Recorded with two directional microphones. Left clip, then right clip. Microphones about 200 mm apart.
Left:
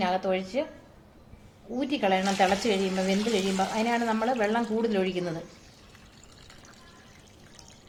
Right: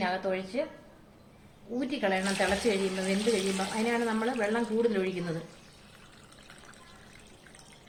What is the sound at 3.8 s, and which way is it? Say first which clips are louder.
A woman's voice: even; 40° left (ahead or behind).